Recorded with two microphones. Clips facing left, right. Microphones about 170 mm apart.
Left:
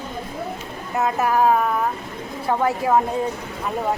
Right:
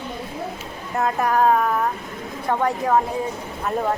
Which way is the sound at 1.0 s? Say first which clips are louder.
Even; 5° left (ahead or behind).